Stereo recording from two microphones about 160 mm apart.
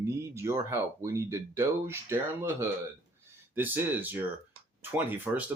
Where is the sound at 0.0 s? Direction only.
15° right (ahead or behind).